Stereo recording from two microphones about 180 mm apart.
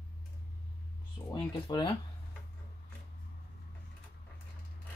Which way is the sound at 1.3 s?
20° left (ahead or behind).